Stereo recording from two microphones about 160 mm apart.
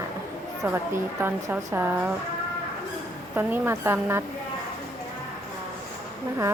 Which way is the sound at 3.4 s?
15° right (ahead or behind).